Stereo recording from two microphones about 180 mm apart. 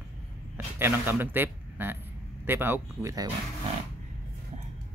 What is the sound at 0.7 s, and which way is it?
Speech, 10° right (ahead or behind).